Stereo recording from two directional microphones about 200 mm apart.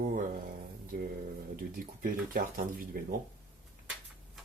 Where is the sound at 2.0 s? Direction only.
45° right (ahead or behind).